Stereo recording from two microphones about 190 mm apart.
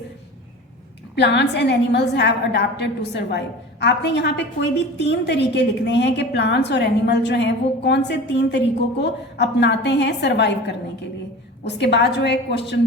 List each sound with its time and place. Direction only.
1.1 s a woman's voice: 65° left (ahead or behind)